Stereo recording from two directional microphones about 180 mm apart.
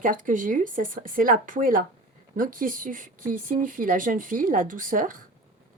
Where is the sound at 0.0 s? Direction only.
45° right (ahead or behind).